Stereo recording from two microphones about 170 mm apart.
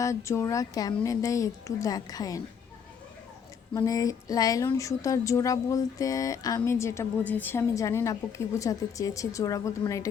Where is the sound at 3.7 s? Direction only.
20° left (ahead or behind).